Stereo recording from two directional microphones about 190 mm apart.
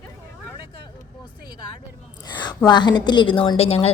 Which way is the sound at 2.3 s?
20° left (ahead or behind).